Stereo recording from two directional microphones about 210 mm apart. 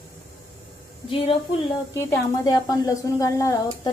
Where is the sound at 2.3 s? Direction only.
15° left (ahead or behind).